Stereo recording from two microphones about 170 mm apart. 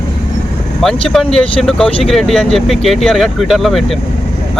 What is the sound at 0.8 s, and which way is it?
Speech, centre (ahead or behind).